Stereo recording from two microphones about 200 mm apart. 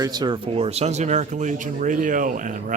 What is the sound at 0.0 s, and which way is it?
Speech, 20° right (ahead or behind).